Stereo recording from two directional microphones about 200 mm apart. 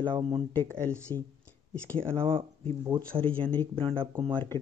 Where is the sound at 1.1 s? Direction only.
20° right (ahead or behind).